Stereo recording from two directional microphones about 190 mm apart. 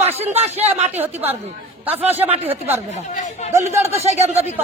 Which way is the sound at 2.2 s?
30° right (ahead or behind).